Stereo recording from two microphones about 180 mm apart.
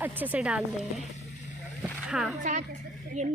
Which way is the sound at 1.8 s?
5° right (ahead or behind).